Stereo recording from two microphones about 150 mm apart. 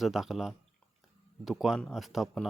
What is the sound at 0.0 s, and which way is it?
Speech, centre (ahead or behind).